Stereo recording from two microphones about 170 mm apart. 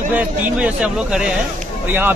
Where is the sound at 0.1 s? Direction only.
5° right (ahead or behind).